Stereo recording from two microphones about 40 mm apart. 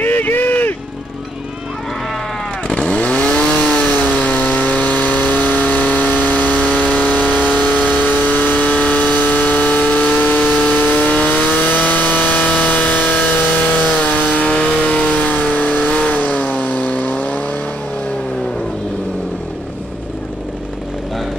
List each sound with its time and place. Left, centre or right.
0.0 s a sound: left
2.7 s chainsaw: left
3.3 s chainsaw: centre
3.9 s vehicle: left
11.5 s vehicle: left
12.4 s vehicle: left
14.6 s vehicle: left